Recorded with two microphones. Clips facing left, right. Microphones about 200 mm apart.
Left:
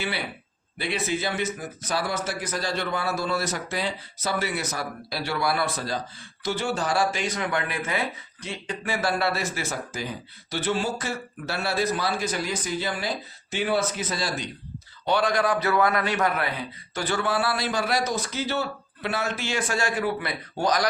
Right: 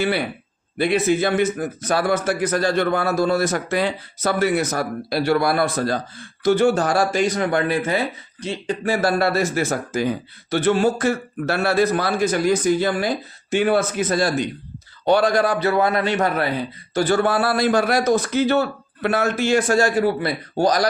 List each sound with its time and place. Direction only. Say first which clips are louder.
0.8 s a man's voice: right 10 dB; 50° right (ahead or behind)
15.0 s a man's voice: right 6 dB; 40° right (ahead or behind)
16.9 s a sound: right 10 dB; 40° right (ahead or behind)
17.2 s a man's voice: right 7 dB; 50° right (ahead or behind)